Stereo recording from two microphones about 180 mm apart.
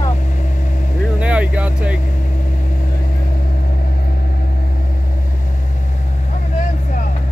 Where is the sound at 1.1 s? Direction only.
5° right (ahead or behind).